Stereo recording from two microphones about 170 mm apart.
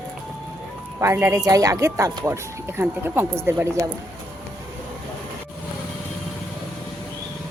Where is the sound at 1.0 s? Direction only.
15° right (ahead or behind).